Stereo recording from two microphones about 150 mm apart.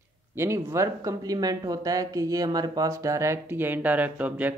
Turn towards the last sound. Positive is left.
turn(degrees=-10)  # may be behind; listen again after turning